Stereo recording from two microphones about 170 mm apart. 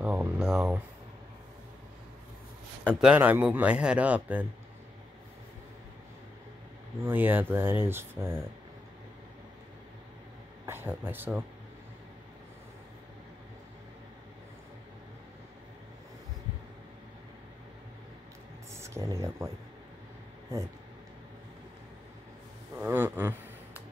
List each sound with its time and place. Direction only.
0.0 s speech: 10° right (ahead or behind)
2.9 s speech: 10° right (ahead or behind)
7.1 s speech: 10° right (ahead or behind)
10.6 s speech: 15° right (ahead or behind)
18.8 s speech: 15° right (ahead or behind)
22.8 s speech: 15° right (ahead or behind)